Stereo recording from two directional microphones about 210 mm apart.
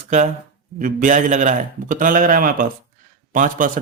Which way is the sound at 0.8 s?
40° right (ahead or behind).